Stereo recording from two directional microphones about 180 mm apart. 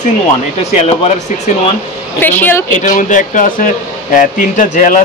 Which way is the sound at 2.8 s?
45° left (ahead or behind).